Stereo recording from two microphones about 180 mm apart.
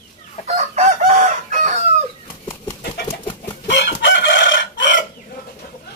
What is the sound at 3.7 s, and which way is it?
Chicken, 70° left (ahead or behind).